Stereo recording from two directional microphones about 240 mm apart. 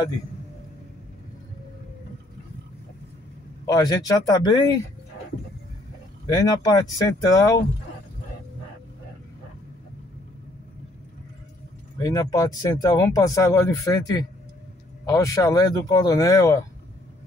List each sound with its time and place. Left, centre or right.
3.6 s speech: centre
6.2 s speech: centre
12.0 s speech: centre